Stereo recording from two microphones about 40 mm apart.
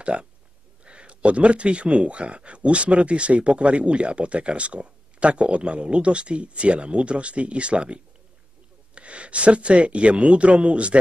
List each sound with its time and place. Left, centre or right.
0.0 s speech: right